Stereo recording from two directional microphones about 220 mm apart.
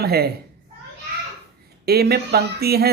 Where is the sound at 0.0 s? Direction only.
45° right (ahead or behind).